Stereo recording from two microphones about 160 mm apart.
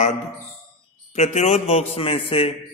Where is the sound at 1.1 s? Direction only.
45° left (ahead or behind).